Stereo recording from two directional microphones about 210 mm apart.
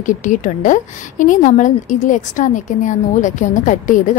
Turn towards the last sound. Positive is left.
turn(degrees=40)  # may be behind; listen again after turning